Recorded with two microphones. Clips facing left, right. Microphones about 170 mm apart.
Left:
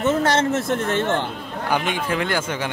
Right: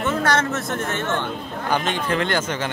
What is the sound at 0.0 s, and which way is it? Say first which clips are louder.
Speech: left 2 dB; 25° left (ahead or behind).